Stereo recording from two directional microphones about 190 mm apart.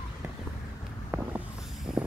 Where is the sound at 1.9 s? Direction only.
5° right (ahead or behind).